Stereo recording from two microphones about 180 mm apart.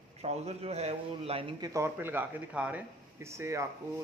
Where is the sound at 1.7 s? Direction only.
15° right (ahead or behind).